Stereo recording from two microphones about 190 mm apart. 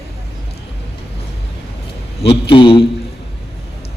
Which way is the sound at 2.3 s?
25° left (ahead or behind).